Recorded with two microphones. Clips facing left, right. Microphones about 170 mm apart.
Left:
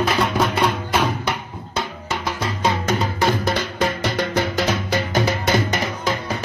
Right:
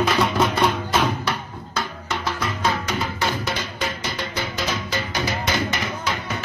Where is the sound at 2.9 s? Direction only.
50° left (ahead or behind).